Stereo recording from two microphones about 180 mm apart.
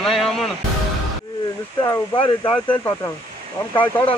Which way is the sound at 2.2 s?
25° left (ahead or behind).